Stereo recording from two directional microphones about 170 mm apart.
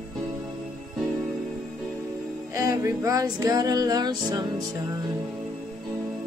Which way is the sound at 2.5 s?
20° right (ahead or behind).